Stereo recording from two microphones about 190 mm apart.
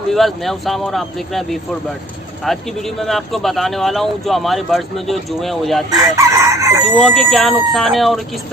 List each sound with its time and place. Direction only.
0.1 s speech: centre (ahead or behind)
6.1 s chicken: 15° right (ahead or behind)
6.8 s speech: centre (ahead or behind)